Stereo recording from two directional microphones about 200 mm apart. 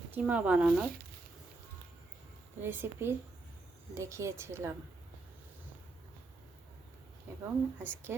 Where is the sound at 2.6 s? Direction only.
10° right (ahead or behind).